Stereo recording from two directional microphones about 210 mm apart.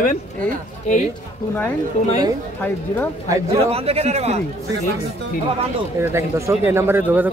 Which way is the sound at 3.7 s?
30° right (ahead or behind).